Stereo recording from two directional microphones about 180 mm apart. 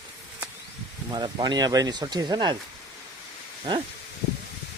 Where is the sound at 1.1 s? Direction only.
25° right (ahead or behind).